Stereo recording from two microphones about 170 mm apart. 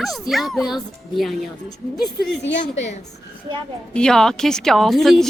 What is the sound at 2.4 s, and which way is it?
Speech, 90° left.